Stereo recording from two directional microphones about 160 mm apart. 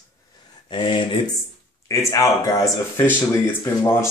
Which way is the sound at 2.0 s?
20° left (ahead or behind).